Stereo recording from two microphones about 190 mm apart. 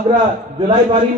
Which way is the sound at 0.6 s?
25° right (ahead or behind).